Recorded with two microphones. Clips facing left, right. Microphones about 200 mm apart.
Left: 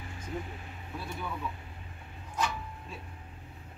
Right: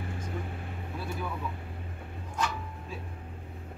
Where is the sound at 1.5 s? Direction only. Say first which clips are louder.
Right 6 dB; 50° right (ahead or behind).